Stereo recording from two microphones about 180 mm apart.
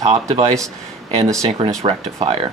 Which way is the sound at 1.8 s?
35° right (ahead or behind).